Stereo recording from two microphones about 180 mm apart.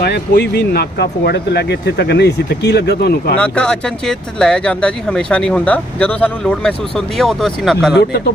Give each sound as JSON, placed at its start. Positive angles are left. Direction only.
{"t": 0.0, "sound": "speech", "side_deg": 60}
{"t": 3.3, "sound": "speech", "side_deg": 5}
{"t": 7.9, "sound": "speech", "side_deg": 65}